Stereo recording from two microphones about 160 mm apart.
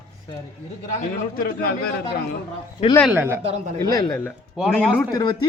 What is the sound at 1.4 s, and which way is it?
Speech, 75° left (ahead or behind).